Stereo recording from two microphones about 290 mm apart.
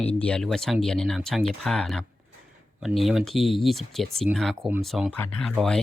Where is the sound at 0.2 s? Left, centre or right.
Centre.